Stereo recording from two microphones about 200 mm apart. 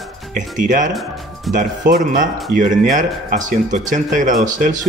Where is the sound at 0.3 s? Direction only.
40° right (ahead or behind).